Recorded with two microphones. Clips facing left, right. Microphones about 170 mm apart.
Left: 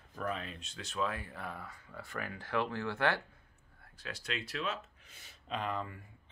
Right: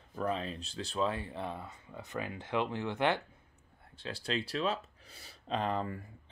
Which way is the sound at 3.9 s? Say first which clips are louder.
Right 5 dB; 30° right (ahead or behind).